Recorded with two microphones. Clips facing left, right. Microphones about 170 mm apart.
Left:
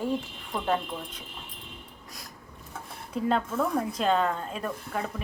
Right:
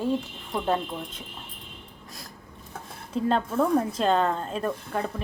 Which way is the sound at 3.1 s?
30° right (ahead or behind).